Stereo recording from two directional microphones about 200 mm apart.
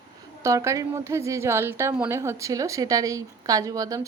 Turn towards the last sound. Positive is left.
turn(degrees=-15)  # may be behind; listen again after turning